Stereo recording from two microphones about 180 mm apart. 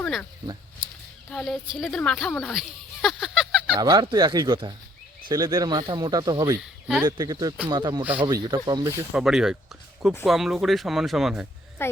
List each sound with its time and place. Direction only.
0.0 s speech: 5° left (ahead or behind)
1.3 s speech: 5° left (ahead or behind)
3.8 s speech: 25° right (ahead or behind)
6.6 s speech: 5° right (ahead or behind)
7.0 s speech: 25° right (ahead or behind)
9.1 s speech: 5° right (ahead or behind)
11.8 s speech: 15° left (ahead or behind)